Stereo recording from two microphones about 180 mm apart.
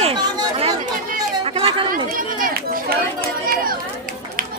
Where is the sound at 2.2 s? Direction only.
50° right (ahead or behind).